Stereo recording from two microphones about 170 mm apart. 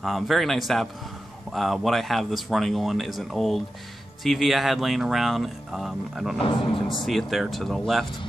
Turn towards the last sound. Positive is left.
turn(degrees=0)  # may be behind; listen again after turning